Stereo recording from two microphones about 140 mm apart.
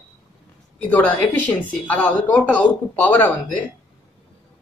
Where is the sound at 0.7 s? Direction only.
10° left (ahead or behind).